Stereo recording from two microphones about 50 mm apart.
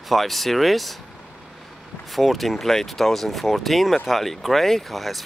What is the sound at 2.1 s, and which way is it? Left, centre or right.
Speech, centre.